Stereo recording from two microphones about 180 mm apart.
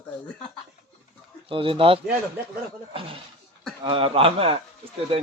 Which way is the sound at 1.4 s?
30° right (ahead or behind).